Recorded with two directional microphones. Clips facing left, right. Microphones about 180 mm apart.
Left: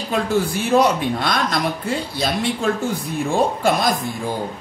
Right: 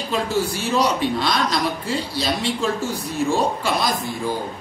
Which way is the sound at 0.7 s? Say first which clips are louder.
Left 5 dB; 55° left (ahead or behind).